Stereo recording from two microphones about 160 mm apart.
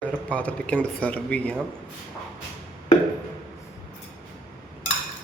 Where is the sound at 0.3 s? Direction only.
5° left (ahead or behind).